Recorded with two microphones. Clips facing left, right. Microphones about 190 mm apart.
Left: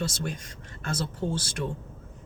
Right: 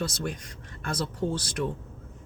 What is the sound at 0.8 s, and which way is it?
Speech, 25° left (ahead or behind).